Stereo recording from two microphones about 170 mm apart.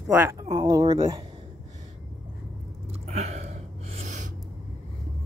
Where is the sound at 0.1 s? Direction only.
15° right (ahead or behind).